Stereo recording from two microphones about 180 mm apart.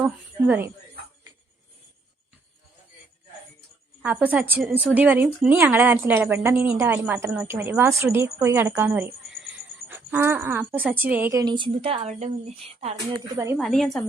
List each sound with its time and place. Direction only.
0.0 s a woman's voice: 10° right (ahead or behind)
4.0 s a woman's voice: 10° right (ahead or behind); by 12.3 s 35° right (ahead or behind)
13.1 s a woman's voice: 15° right (ahead or behind)
13.6 s a woman's voice: centre (ahead or behind)